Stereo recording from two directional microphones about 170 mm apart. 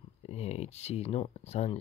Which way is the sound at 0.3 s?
40° left (ahead or behind).